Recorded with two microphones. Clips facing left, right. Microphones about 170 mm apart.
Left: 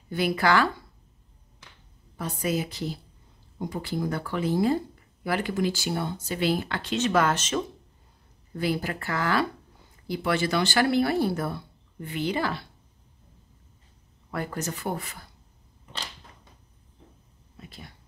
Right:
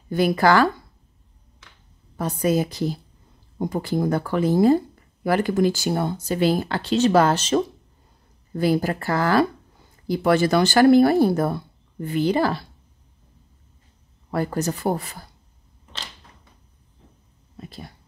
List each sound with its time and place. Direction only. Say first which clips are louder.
0.1 s speech: right 6 dB; 40° right (ahead or behind)
2.1 s speech: right 7 dB; 40° right (ahead or behind)
14.3 s speech: right 8 dB; 35° right (ahead or behind)
17.6 s a sound: right 7 dB; 35° right (ahead or behind)